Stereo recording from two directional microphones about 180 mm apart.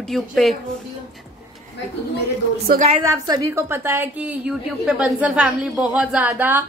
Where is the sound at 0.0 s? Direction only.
Centre (ahead or behind).